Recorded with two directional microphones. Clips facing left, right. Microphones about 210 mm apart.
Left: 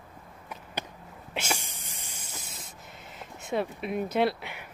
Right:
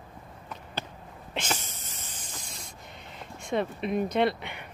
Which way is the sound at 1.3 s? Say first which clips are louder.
Even; 10° left (ahead or behind).